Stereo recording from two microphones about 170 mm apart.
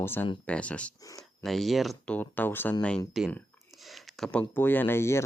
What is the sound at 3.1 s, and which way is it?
Speech, centre (ahead or behind).